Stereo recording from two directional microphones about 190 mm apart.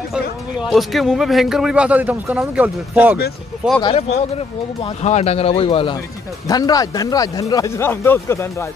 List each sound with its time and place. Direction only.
0.1 s speech: centre (ahead or behind)
3.8 s speech: 30° left (ahead or behind); by 8.6 s 15° left (ahead or behind)